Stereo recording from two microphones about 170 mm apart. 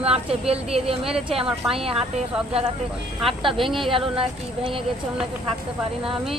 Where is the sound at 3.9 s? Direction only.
30° right (ahead or behind).